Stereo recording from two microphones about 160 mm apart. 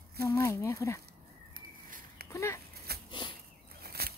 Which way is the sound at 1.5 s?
60° right (ahead or behind).